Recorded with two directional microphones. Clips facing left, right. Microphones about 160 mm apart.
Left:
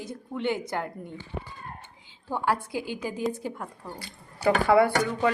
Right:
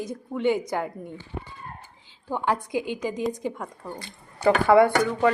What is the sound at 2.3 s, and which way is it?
Speech, 15° right (ahead or behind).